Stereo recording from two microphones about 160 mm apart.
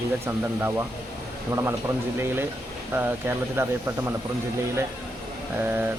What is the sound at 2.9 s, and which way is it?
Speech, 15° right (ahead or behind).